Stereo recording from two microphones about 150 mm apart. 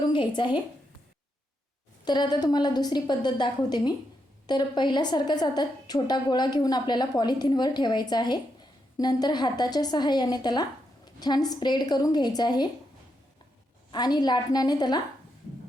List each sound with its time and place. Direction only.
0.1 s a woman's voice: 30° left (ahead or behind)
2.0 s a woman's voice: 30° left (ahead or behind)
13.9 s a woman's voice: 25° left (ahead or behind)